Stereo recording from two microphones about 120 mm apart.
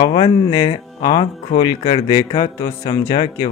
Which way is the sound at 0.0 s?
45° left (ahead or behind).